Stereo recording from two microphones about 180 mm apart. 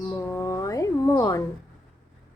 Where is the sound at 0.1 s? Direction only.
15° left (ahead or behind).